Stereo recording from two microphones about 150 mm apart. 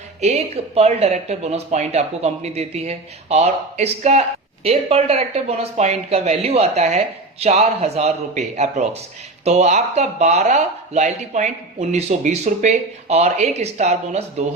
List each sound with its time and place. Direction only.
0.2 s speech: 45° right (ahead or behind)